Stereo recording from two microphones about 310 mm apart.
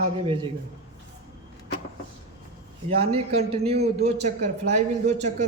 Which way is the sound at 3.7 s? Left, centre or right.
Right.